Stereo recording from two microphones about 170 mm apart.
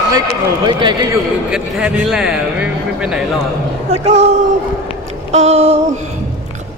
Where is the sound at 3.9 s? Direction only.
40° right (ahead or behind).